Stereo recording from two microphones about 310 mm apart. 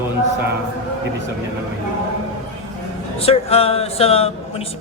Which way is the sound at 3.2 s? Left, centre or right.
Centre.